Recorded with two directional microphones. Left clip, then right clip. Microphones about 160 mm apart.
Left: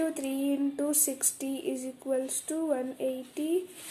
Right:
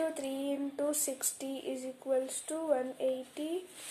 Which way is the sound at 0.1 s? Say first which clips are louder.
Left 4 dB; 15° left (ahead or behind).